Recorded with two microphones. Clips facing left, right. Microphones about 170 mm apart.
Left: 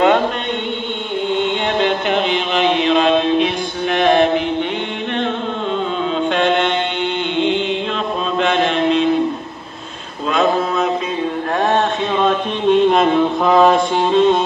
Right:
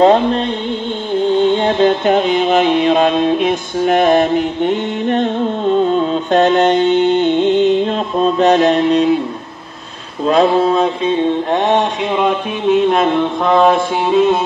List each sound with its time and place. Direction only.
0.0 s music: 35° right (ahead or behind)
10.2 s mantra: 35° right (ahead or behind); by 14.4 s 5° right (ahead or behind)